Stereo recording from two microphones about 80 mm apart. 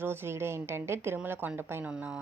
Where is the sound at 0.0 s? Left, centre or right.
Right; by 2.2 s centre.